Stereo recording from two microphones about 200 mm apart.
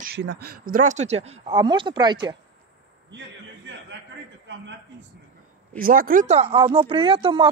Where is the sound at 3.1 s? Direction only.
65° right (ahead or behind).